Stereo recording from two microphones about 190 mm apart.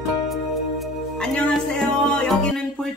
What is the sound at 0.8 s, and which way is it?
Music, centre (ahead or behind).